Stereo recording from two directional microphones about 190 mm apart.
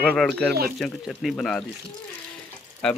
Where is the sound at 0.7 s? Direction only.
Centre (ahead or behind).